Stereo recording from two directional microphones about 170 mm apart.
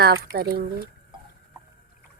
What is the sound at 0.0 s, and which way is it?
Speech, 65° right (ahead or behind).